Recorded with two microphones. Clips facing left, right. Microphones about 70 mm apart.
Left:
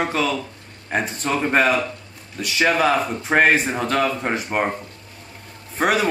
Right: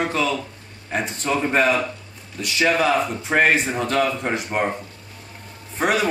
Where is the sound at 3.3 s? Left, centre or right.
Left.